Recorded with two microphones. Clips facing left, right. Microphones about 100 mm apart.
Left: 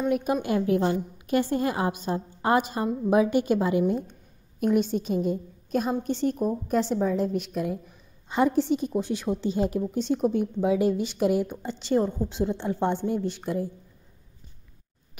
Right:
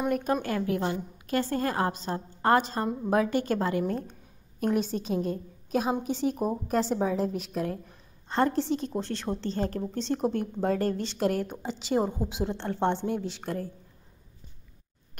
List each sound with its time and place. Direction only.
0.1 s a woman's voice: 10° left (ahead or behind)
4.1 s a woman's voice: centre (ahead or behind)